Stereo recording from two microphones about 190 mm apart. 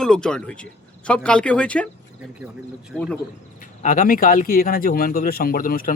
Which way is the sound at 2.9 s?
5° left (ahead or behind).